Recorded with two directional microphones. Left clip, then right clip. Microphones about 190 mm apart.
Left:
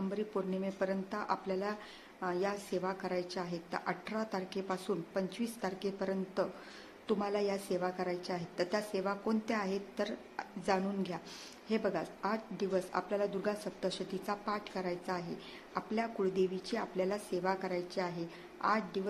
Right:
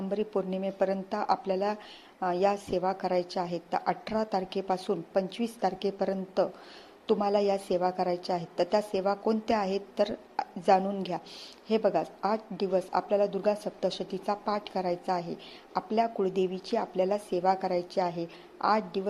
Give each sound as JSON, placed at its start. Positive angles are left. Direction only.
{"t": 0.1, "sound": "a woman's voice", "side_deg": -25}